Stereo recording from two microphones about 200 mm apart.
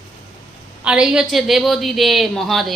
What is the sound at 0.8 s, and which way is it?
A woman's voice, 5° right (ahead or behind).